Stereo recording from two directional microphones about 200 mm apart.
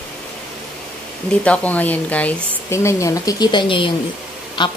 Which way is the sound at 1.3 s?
5° left (ahead or behind).